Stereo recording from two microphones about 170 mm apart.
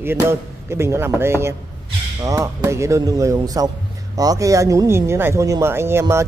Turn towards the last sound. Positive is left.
turn(degrees=-15)  # may be behind; listen again after turning